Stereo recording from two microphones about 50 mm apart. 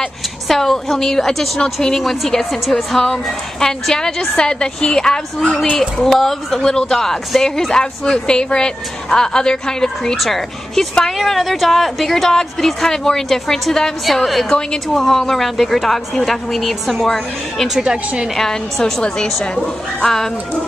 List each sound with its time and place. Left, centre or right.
0.5 s a woman's voice: centre
10.1 s speech: centre
14.5 s a woman's voice: centre
17.6 s a woman's voice: centre
18.3 s a woman's voice: centre